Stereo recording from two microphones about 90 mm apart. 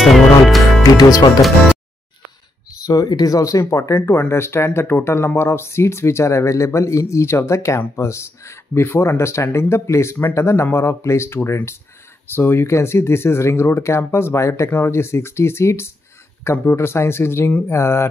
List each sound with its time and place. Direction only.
0.0 s music: centre (ahead or behind)
0.9 s speech: 45° left (ahead or behind)
2.8 s speech: 45° left (ahead or behind)